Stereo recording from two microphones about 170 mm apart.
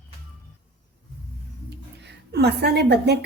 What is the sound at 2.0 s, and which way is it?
A woman's voice, 75° right (ahead or behind).